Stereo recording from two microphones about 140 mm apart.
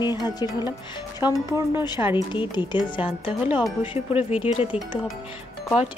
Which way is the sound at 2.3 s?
35° left (ahead or behind).